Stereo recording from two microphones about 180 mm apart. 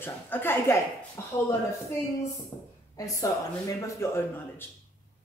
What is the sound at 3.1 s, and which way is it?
A woman's voice, 20° left (ahead or behind).